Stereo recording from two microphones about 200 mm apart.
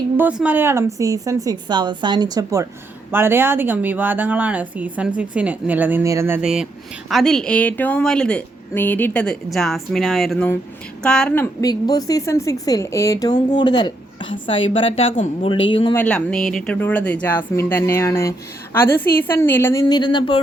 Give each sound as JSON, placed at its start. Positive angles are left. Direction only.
{"t": 0.2, "sound": "speech", "side_deg": -5}
{"t": 11.7, "sound": "a woman's voice", "side_deg": 20}
{"t": 16.0, "sound": "speech", "side_deg": 5}